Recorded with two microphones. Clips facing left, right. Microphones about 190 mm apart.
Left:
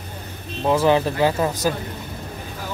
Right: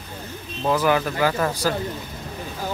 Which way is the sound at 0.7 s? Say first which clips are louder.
Left 3 dB; 25° left (ahead or behind).